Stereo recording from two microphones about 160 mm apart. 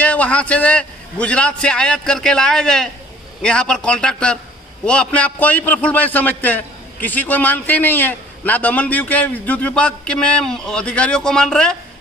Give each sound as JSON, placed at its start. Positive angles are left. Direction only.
{"t": 0.0, "sound": "a man's voice", "side_deg": 10}